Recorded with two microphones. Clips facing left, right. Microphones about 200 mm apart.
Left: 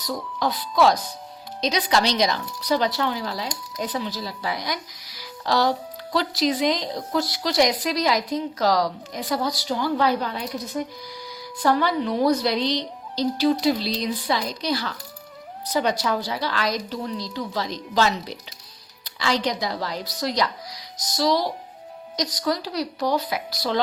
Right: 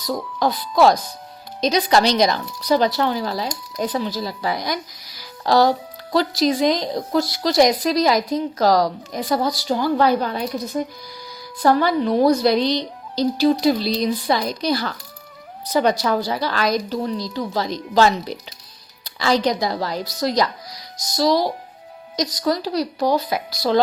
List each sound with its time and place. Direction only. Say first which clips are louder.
0.3 s a woman's voice: right 4 dB; 40° right (ahead or behind)
12.7 s speech: right 4 dB; 10° right (ahead or behind)
13.6 s a woman's voice: right 4 dB; 45° right (ahead or behind)